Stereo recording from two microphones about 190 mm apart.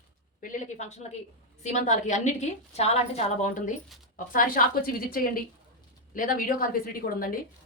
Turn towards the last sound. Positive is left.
turn(degrees=50)  # may be behind; listen again after turning